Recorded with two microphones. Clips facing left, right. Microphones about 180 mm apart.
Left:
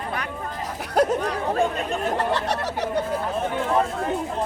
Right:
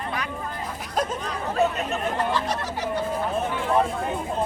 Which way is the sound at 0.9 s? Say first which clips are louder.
Left 7 dB; 65° left (ahead or behind).